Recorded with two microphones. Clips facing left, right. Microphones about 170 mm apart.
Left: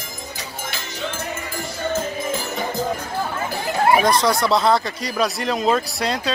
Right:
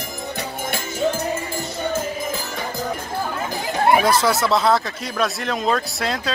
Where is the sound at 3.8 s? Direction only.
Centre (ahead or behind).